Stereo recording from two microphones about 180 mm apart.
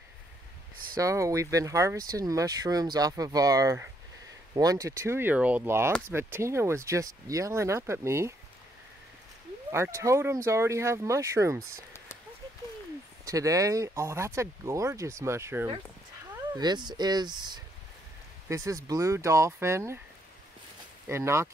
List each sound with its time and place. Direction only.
0.9 s speech: 15° right (ahead or behind)
9.7 s speech: 15° right (ahead or behind)
13.2 s speech: 20° right (ahead or behind)
21.1 s speech: 15° right (ahead or behind)